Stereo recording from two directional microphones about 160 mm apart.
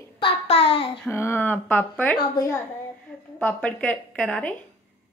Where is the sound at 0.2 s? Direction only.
40° left (ahead or behind).